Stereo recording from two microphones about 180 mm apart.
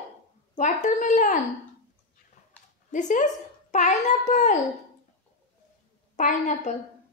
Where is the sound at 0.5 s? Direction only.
45° left (ahead or behind).